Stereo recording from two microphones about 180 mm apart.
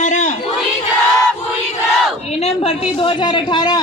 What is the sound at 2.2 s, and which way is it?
A man's voice, 35° left (ahead or behind).